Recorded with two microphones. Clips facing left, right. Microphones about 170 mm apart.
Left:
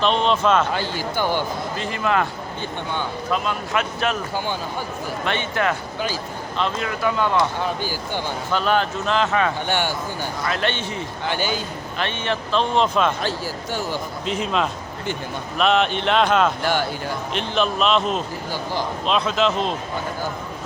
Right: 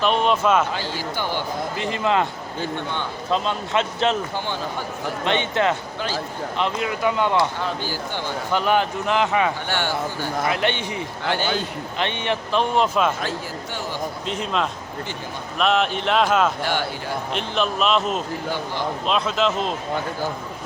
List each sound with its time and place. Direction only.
0.0 s speech: 10° right (ahead or behind)
0.7 s speech: 50° left (ahead or behind)
1.8 s speech: 20° right (ahead or behind)
3.2 s speech: 25° right (ahead or behind)
5.2 s speech: 20° right (ahead or behind)
7.3 s speech: 15° left (ahead or behind)
8.5 s speech: 15° right (ahead or behind)
9.6 s speech: 15° left (ahead or behind)
10.4 s speech: 15° right (ahead or behind)
14.3 s speech: centre (ahead or behind)